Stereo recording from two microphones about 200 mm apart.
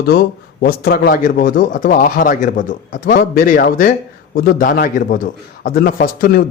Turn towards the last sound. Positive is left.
turn(degrees=45)  # may be behind; listen again after turning